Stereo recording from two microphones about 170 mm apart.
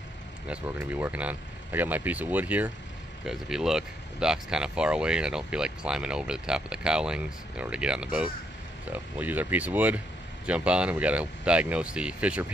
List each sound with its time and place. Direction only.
0.5 s speech: 10° right (ahead or behind)